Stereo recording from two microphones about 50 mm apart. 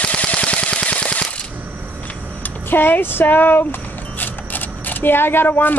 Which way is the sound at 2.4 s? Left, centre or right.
Left.